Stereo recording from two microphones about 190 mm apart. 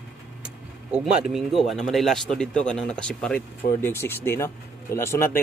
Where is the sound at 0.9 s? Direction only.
5° right (ahead or behind).